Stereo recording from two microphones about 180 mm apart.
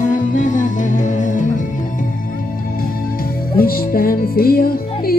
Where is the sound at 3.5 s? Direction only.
55° left (ahead or behind).